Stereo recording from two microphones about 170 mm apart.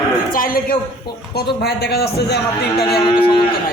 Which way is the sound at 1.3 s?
75° left (ahead or behind).